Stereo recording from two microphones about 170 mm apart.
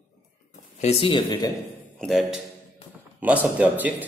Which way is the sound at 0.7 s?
40° left (ahead or behind).